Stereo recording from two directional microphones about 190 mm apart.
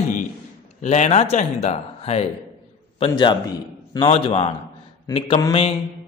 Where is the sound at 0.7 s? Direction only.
40° left (ahead or behind).